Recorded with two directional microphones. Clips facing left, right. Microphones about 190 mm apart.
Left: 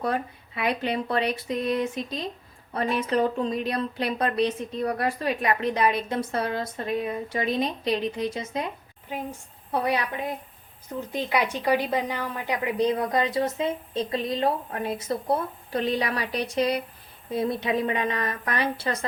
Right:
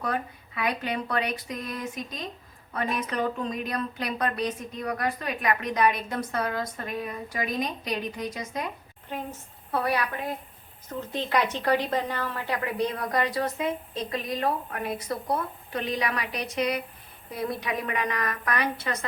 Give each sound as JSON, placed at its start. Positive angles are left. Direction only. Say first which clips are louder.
{"t": 0.0, "sound": "speech", "louder": "left 3 dB", "side_deg": 30}
{"t": 9.0, "sound": "a woman's voice", "louder": "left 2 dB", "side_deg": 10}